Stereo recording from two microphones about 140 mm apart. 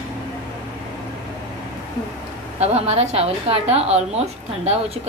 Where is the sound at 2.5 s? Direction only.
50° right (ahead or behind).